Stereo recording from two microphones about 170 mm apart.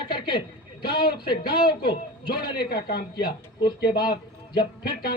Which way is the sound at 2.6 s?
70° left (ahead or behind).